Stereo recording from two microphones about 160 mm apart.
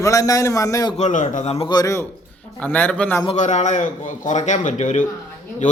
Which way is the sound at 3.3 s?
50° left (ahead or behind).